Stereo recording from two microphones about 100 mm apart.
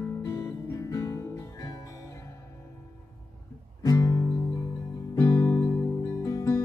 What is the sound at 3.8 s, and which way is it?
Music, 40° left (ahead or behind).